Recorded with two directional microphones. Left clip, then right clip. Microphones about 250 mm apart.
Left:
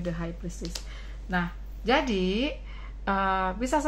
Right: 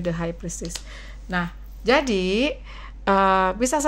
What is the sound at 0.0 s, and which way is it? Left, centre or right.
Speech, right.